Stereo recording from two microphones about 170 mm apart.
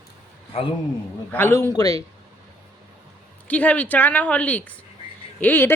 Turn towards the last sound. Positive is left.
turn(degrees=10)  # may be behind; listen again after turning